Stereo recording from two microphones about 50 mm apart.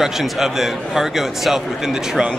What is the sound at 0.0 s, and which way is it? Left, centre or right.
A man's voice, centre.